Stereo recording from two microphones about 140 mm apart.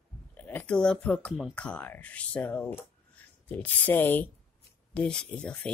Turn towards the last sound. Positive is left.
turn(degrees=10)  # may be behind; listen again after turning